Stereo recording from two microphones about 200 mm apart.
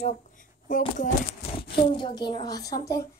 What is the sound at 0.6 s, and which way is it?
Speech, 40° left (ahead or behind).